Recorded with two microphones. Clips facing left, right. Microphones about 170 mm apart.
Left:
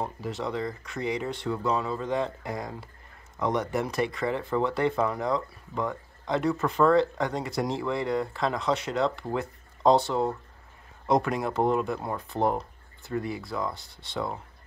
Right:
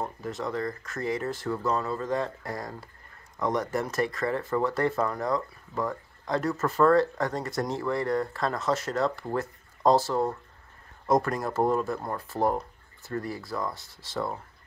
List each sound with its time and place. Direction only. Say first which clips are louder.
0.0 s speech: left 1 dB; centre (ahead or behind)